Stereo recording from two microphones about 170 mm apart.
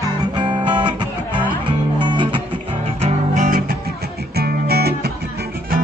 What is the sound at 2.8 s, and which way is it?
Music, 40° right (ahead or behind).